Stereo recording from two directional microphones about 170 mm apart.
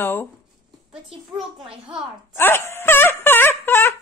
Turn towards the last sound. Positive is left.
turn(degrees=10)  # may be behind; listen again after turning